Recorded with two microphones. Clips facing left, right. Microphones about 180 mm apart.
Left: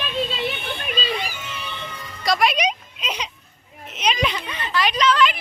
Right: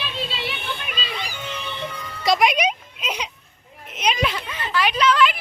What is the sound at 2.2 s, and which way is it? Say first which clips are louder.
Speech: right 2 dB; 20° right (ahead or behind).